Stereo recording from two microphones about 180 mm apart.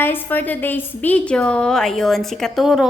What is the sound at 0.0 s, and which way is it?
A woman's voice, 10° left (ahead or behind).